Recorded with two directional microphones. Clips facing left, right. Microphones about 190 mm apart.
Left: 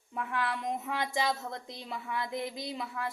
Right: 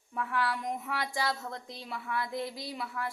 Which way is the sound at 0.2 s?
25° left (ahead or behind).